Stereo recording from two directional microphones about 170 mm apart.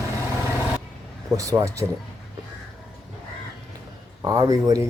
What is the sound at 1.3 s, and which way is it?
Speech, 20° right (ahead or behind).